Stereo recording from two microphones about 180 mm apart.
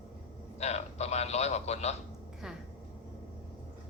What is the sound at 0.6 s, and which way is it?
A man's voice, 35° left (ahead or behind).